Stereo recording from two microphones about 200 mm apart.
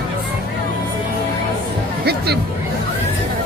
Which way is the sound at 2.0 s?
50° right (ahead or behind).